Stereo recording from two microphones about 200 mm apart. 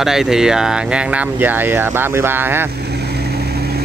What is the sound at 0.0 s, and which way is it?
Speech, centre (ahead or behind).